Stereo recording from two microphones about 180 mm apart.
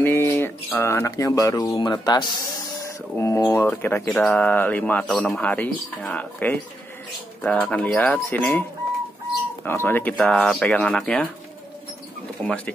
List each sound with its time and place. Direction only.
0.0 s a sound: 15° left (ahead or behind)
0.7 s speech: 15° left (ahead or behind)
9.7 s speech: 10° left (ahead or behind)
12.4 s speech: 5° left (ahead or behind)